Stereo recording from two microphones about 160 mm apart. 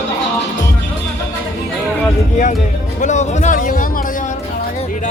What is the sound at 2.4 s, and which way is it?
Speech, 50° left (ahead or behind).